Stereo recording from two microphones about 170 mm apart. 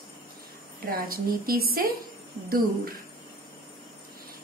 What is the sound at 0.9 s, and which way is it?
A woman's voice, 60° right (ahead or behind).